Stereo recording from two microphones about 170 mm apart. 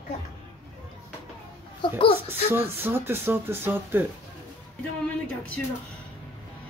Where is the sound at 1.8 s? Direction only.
30° left (ahead or behind).